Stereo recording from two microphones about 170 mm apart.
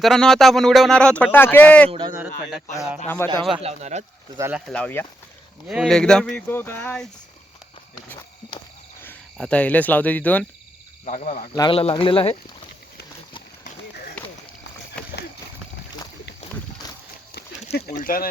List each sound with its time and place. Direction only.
0.0 s speech: centre (ahead or behind)
1.9 s speech: 25° right (ahead or behind)
3.2 s speech: 15° left (ahead or behind)
3.6 s speech: 40° right (ahead or behind)
4.5 s speech: 5° left (ahead or behind)
5.6 s speech: centre (ahead or behind)
9.0 s speech: 10° left (ahead or behind)
11.0 s speech: 45° left (ahead or behind)
11.5 s speech: 30° left (ahead or behind)
14.2 s a sound: 5° left (ahead or behind)
15.0 s horse: 5° left (ahead or behind)
16.8 s walk: 20° left (ahead or behind)
17.3 s a sound: 65° left (ahead or behind)